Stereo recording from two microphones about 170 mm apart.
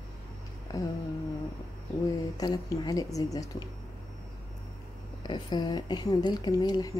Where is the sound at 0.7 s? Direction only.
20° left (ahead or behind).